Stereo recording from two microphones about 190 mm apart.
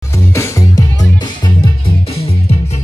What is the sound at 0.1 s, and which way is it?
Music, 15° left (ahead or behind).